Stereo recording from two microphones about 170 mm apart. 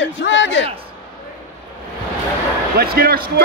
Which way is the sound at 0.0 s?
90° left.